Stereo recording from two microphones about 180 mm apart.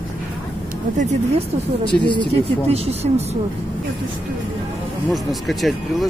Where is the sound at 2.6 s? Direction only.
35° right (ahead or behind).